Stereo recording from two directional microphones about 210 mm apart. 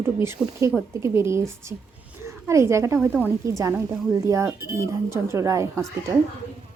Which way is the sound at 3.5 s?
15° right (ahead or behind).